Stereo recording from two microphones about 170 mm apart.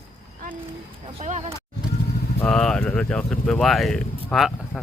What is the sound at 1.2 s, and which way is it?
Speech, 40° right (ahead or behind).